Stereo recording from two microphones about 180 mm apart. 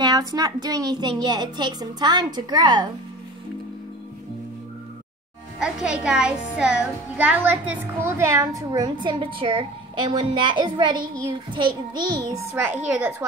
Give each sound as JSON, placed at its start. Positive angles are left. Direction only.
{"t": 0.0, "sound": "a woman's voice", "side_deg": -20}
{"t": 5.6, "sound": "a child's voice", "side_deg": -5}